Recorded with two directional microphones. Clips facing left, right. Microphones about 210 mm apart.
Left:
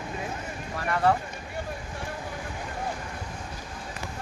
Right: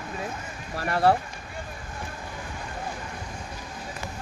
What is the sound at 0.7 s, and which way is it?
Speech, 35° right (ahead or behind).